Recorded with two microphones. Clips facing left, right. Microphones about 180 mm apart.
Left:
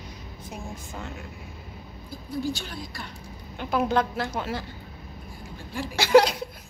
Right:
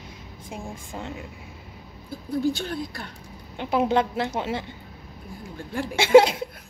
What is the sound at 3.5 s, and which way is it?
A woman's voice, 25° right (ahead or behind).